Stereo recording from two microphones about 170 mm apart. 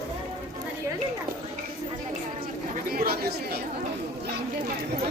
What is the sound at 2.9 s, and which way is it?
Chatter, 60° right (ahead or behind).